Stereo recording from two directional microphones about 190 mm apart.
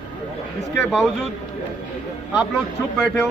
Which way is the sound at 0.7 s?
5° left (ahead or behind).